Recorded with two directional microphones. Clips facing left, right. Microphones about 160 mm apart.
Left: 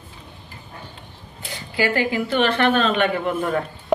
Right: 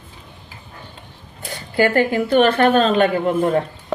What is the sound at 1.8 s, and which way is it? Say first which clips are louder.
A woman's voice: right 5 dB; 50° right (ahead or behind).